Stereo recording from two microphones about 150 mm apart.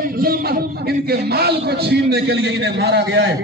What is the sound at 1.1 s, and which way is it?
A man's voice, 90° right.